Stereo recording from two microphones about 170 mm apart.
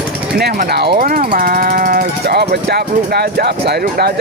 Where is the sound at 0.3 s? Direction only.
65° right (ahead or behind).